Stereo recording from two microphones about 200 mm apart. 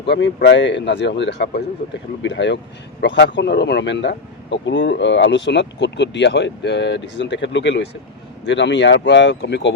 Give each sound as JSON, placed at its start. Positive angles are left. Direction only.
{"t": 0.0, "sound": "speech", "side_deg": 60}